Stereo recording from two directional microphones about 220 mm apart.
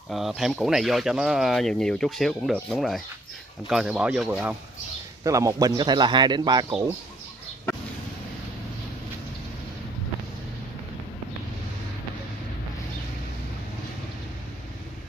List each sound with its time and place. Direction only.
0.1 s speech: centre (ahead or behind); by 6.6 s 20° right (ahead or behind)